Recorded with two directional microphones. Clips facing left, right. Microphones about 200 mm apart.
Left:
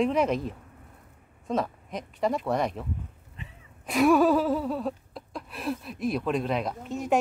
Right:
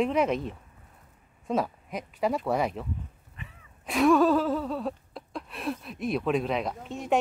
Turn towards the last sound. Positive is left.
turn(degrees=0)  # may be behind; listen again after turning